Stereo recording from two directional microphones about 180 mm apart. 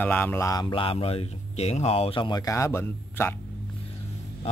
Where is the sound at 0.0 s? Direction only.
10° left (ahead or behind).